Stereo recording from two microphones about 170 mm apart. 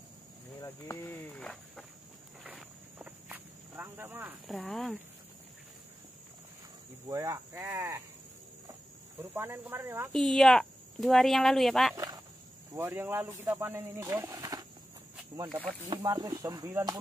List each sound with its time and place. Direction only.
0.6 s speech: 15° left (ahead or behind)
2.4 s walk: 5° right (ahead or behind)
4.5 s speech: centre (ahead or behind)
7.1 s speech: 20° right (ahead or behind)
9.2 s speech: 15° right (ahead or behind)
10.1 s speech: centre (ahead or behind)
11.9 s speech: 20° right (ahead or behind)
15.9 s speech: 20° right (ahead or behind)